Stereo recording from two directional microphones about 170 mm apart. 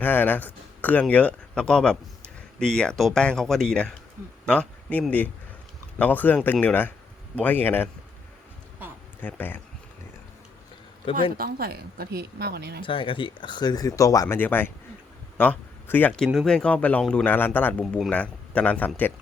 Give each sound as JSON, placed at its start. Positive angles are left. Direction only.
{"t": 0.0, "sound": "speech", "side_deg": 10}
{"t": 9.2, "sound": "speech", "side_deg": 10}
{"t": 11.3, "sound": "speech", "side_deg": -60}
{"t": 12.8, "sound": "speech", "side_deg": 30}